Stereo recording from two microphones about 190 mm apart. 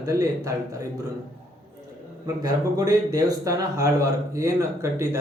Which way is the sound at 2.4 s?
20° right (ahead or behind).